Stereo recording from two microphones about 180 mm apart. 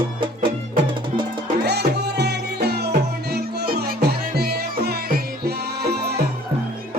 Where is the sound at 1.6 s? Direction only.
65° right (ahead or behind).